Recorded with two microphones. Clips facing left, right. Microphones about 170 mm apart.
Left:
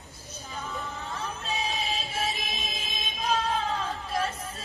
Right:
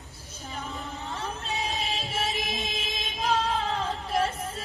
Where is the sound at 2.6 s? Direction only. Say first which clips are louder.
Right 3 dB; 25° right (ahead or behind).